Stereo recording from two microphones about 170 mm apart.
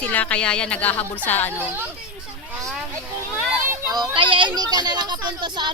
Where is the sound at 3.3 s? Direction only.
10° right (ahead or behind).